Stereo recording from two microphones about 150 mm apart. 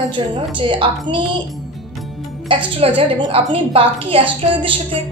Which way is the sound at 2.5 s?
35° right (ahead or behind).